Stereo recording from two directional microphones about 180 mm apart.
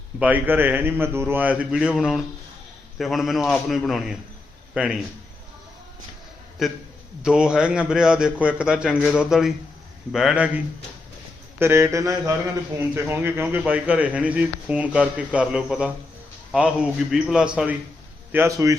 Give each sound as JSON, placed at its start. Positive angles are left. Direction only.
{"t": 0.2, "sound": "a man's voice", "side_deg": -10}
{"t": 6.6, "sound": "speech", "side_deg": 0}
{"t": 11.6, "sound": "a man's voice", "side_deg": -15}